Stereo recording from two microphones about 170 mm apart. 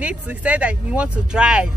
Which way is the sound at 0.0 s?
10° right (ahead or behind).